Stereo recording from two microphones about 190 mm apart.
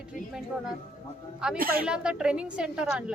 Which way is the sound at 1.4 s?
5° right (ahead or behind).